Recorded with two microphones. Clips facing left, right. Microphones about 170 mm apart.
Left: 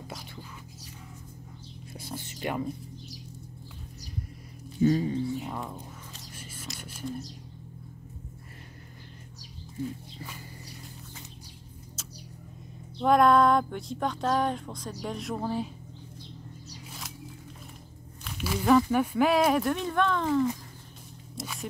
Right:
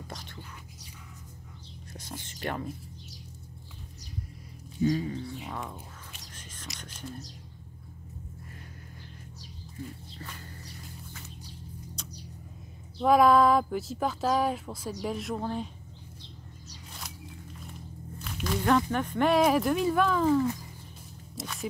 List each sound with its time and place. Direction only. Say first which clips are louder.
2.0 s whispering: left 2 dB; 10° left (ahead or behind)
4.9 s speech: left 4 dB; 30° left (ahead or behind)
5.3 s speech: left 4 dB; 5° left (ahead or behind)
6.6 s music: left 5 dB; 10° left (ahead or behind)
10.1 s music: left 1 dB; 10° left (ahead or behind)
13.0 s speech: even; centre (ahead or behind)
18.2 s speech: even; 5° left (ahead or behind)